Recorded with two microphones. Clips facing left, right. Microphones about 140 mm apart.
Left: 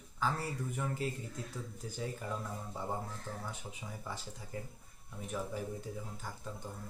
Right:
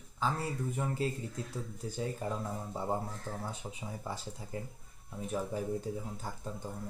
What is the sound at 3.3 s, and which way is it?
Speech, 45° right (ahead or behind).